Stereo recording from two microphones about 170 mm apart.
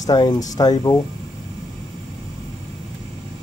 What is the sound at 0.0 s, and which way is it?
Speech, 20° left (ahead or behind).